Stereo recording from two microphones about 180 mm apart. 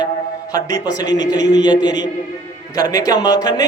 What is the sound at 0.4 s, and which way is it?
A man's voice, 20° left (ahead or behind).